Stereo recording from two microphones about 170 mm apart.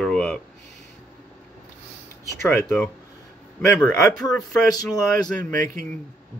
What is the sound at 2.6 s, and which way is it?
Speech, 5° left (ahead or behind).